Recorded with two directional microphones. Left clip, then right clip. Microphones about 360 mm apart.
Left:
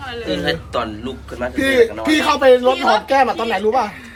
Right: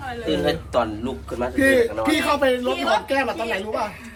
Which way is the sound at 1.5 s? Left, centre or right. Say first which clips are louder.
Left 3 dB; centre.